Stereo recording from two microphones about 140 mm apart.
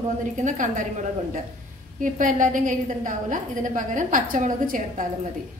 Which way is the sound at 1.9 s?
70° right (ahead or behind).